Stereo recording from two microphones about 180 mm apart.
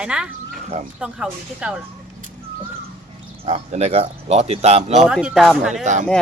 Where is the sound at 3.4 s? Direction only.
35° right (ahead or behind).